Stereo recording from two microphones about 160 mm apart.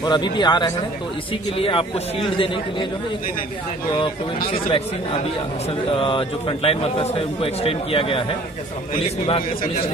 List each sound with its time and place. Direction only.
0.0 s a man's voice: 30° left (ahead or behind)
4.5 s a man's voice: 35° left (ahead or behind)
5.9 s a man's voice: 35° left (ahead or behind)